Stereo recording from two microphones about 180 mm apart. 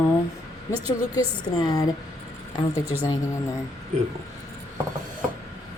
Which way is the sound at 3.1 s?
15° left (ahead or behind).